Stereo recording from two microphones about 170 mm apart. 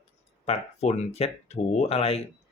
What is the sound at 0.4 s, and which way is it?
Speech, 35° left (ahead or behind).